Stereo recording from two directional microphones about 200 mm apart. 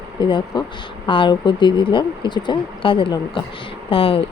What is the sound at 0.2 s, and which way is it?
Speech, 25° left (ahead or behind).